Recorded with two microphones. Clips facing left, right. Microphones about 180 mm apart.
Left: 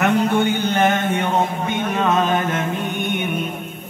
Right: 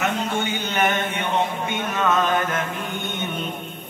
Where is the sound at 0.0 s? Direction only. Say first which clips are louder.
Left 7 dB; 60° left (ahead or behind).